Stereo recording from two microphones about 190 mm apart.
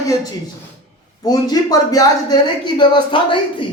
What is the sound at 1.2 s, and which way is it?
A man's voice, 20° left (ahead or behind).